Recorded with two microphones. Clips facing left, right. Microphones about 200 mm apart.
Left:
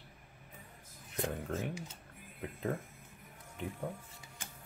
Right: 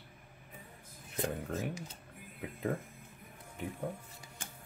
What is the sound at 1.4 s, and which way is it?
A man's voice, centre (ahead or behind).